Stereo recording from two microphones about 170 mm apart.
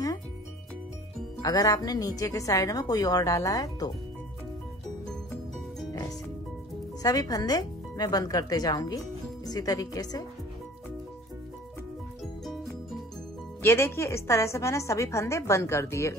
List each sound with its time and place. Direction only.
1.4 s a woman's voice: 20° left (ahead or behind)
5.9 s music: 20° left (ahead or behind)
7.0 s speech: 20° left (ahead or behind)
13.6 s a woman's voice: 15° left (ahead or behind)